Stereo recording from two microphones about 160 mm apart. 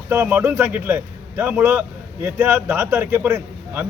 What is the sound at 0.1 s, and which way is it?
A man's voice, 15° right (ahead or behind).